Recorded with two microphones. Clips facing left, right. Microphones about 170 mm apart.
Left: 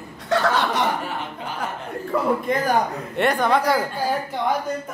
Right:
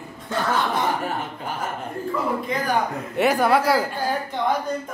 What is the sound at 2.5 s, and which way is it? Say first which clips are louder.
Speech: left 4 dB; 50° left (ahead or behind).